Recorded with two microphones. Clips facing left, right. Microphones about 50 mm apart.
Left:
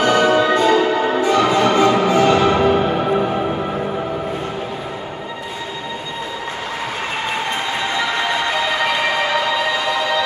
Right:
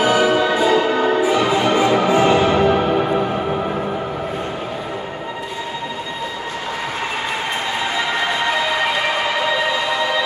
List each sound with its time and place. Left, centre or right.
0.0 s music: centre
2.7 s music: centre